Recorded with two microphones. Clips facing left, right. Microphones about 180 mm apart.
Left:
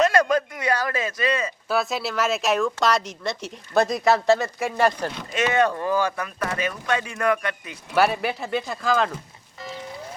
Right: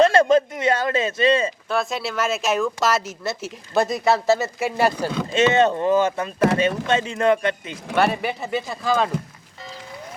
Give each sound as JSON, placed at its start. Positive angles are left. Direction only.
{"t": 0.0, "sound": "a sound", "side_deg": -25}
{"t": 1.6, "sound": "speech", "side_deg": 5}
{"t": 5.3, "sound": "speech", "side_deg": -25}
{"t": 7.9, "sound": "speech", "side_deg": 0}